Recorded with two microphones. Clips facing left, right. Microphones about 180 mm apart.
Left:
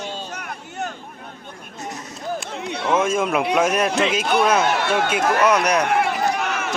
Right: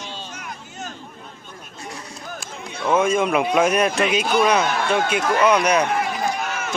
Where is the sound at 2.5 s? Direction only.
70° left (ahead or behind).